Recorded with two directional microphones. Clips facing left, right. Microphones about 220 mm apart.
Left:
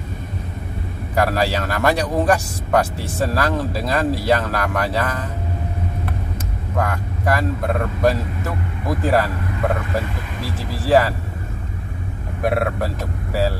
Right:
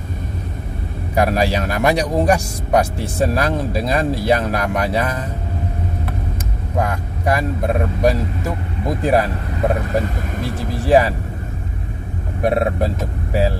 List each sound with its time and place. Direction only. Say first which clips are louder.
1.1 s a man's voice: right 2 dB; 15° right (ahead or behind)
6.8 s a man's voice: right 1 dB; 20° right (ahead or behind)
10.7 s a man's voice: right 2 dB; 15° right (ahead or behind)
12.5 s speech: right 3 dB; 20° right (ahead or behind)